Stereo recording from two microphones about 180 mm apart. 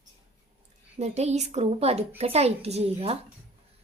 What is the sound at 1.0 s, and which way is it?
A woman's voice, 40° right (ahead or behind).